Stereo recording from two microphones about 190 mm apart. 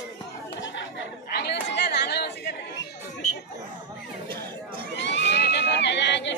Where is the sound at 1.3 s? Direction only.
60° left (ahead or behind).